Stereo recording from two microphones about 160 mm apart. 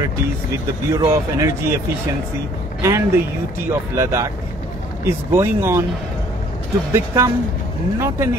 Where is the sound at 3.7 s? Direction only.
20° right (ahead or behind).